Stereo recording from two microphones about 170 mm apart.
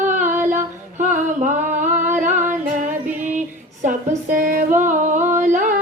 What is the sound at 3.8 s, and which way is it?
Music, 50° right (ahead or behind).